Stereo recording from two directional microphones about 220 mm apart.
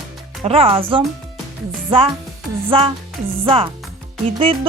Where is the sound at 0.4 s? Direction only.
25° right (ahead or behind).